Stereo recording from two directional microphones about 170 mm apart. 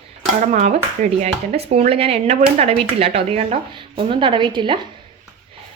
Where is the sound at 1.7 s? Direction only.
35° right (ahead or behind).